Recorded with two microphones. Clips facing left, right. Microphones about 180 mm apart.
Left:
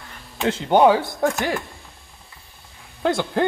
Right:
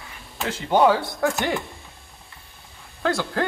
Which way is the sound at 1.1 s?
Centre (ahead or behind).